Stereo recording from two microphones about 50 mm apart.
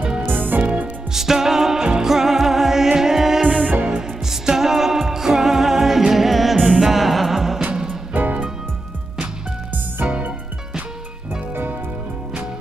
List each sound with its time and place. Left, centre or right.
0.2 s music: right
0.6 s music: right
1.1 s music: centre
3.4 s music: right
4.3 s music: centre
8.1 s music: right